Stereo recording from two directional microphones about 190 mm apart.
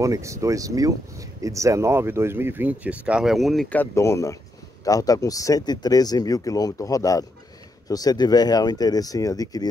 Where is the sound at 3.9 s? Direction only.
15° left (ahead or behind).